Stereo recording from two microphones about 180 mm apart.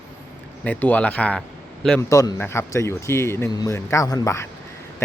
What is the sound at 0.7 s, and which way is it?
Speech, 10° left (ahead or behind).